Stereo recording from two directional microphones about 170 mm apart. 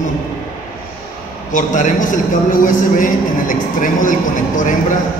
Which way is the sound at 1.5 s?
50° left (ahead or behind).